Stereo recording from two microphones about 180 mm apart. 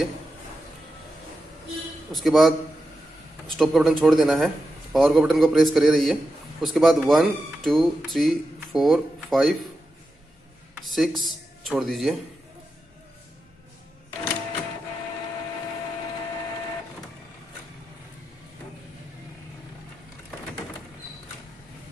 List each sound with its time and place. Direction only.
2.1 s speech: centre (ahead or behind)
10.8 s speech: centre (ahead or behind)